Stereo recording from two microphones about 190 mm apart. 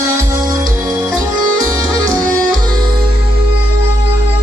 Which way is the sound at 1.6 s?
15° right (ahead or behind).